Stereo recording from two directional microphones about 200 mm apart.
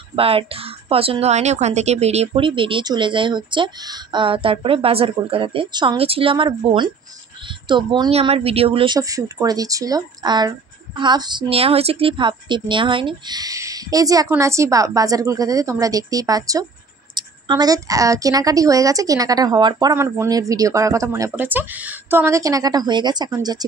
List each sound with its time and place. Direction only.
0.1 s a woman's voice: 25° right (ahead or behind)